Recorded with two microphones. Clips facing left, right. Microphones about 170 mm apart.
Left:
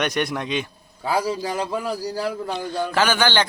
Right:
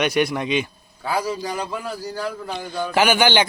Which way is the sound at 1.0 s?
30° left (ahead or behind).